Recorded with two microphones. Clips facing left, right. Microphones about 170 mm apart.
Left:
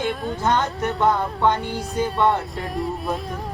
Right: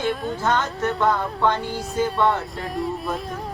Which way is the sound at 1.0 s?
20° left (ahead or behind).